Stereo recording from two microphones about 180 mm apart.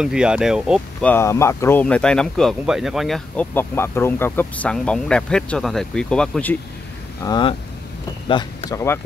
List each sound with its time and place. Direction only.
0.0 s speech: 5° right (ahead or behind)
1.0 s speech: 15° left (ahead or behind)
3.5 s speech: 15° left (ahead or behind)
7.2 s speech: 25° left (ahead or behind)